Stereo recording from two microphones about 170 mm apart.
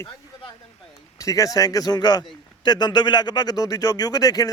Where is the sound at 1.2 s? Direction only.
20° left (ahead or behind).